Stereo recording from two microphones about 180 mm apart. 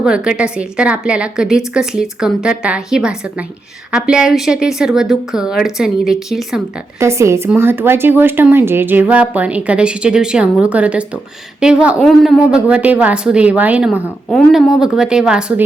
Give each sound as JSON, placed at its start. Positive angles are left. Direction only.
{"t": 0.0, "sound": "a woman's voice", "side_deg": -5}
{"t": 7.0, "sound": "a woman's voice", "side_deg": -15}